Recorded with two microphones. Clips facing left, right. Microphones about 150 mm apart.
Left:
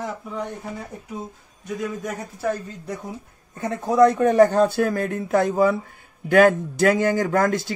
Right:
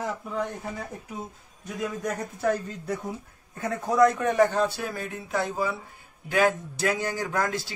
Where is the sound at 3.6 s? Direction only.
25° left (ahead or behind).